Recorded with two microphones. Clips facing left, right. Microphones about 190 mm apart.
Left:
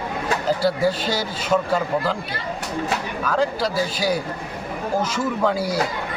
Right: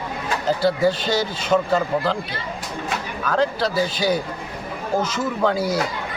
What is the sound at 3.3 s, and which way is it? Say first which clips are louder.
A man's voice: right 1 dB; 10° left (ahead or behind).